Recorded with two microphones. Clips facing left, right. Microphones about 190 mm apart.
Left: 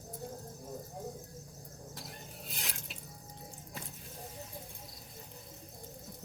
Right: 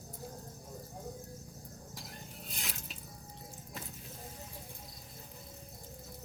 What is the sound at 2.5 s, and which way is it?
Drip, centre (ahead or behind).